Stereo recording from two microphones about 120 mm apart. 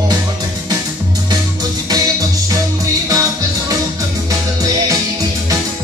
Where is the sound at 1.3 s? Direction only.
35° right (ahead or behind).